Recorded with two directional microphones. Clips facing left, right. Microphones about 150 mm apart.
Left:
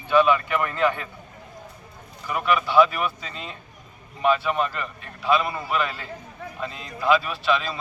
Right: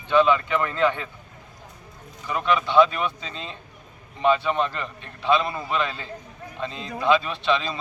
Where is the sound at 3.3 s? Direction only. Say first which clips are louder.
Right 1 dB; 25° right (ahead or behind).